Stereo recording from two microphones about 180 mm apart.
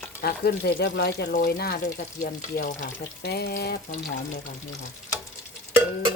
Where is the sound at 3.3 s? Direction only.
65° left (ahead or behind).